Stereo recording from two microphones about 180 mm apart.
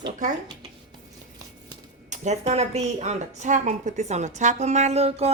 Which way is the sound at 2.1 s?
40° right (ahead or behind).